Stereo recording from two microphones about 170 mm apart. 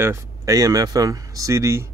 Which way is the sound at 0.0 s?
15° right (ahead or behind).